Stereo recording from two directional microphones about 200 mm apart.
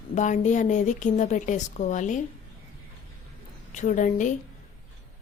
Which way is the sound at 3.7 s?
40° left (ahead or behind).